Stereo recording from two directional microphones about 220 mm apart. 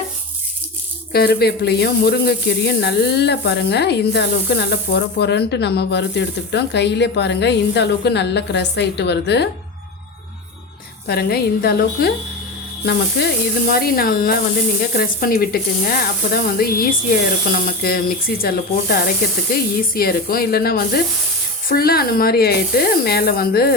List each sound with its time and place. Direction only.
1.1 s speech: 45° left (ahead or behind)
11.0 s speech: 45° left (ahead or behind)
17.7 s speech: 45° left (ahead or behind)